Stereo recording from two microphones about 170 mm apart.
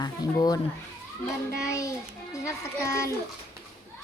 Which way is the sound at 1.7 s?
20° left (ahead or behind).